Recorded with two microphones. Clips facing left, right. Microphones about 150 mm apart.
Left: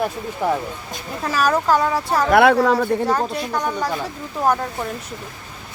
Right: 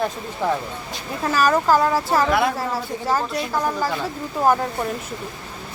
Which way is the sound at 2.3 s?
65° left (ahead or behind).